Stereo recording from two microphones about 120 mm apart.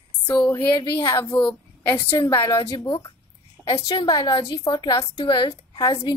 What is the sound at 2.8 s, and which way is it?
Speech, 40° left (ahead or behind).